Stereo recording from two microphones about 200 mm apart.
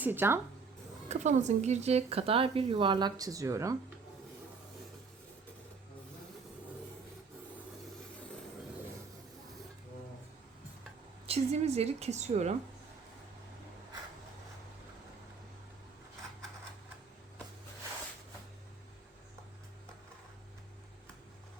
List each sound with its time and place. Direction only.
0.0 s speech: 10° right (ahead or behind)
1.0 s speech: 35° right (ahead or behind); by 3.8 s 15° right (ahead or behind)
11.3 s a woman's voice: 30° right (ahead or behind)